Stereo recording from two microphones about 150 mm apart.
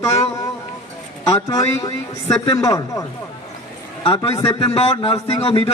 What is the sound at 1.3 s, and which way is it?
A man's voice, 20° left (ahead or behind).